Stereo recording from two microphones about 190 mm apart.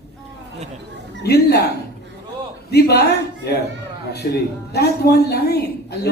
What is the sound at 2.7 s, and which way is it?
Speech, 60° left (ahead or behind).